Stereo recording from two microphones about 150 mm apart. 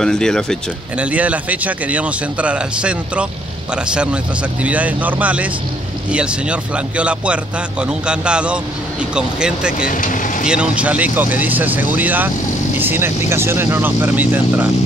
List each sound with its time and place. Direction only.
0.0 s speech: 5° left (ahead or behind)
0.9 s a man's voice: 10° right (ahead or behind)
9.8 s speech: 65° left (ahead or behind)
10.4 s a man's voice: 5° right (ahead or behind)